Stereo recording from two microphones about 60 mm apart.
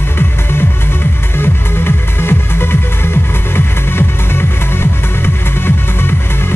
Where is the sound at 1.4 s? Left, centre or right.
Left.